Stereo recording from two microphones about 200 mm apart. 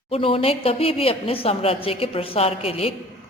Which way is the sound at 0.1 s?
30° left (ahead or behind).